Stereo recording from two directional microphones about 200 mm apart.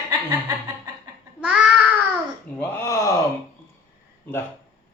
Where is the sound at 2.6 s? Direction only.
15° left (ahead or behind).